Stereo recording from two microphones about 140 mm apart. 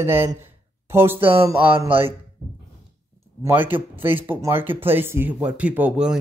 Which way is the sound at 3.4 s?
15° right (ahead or behind).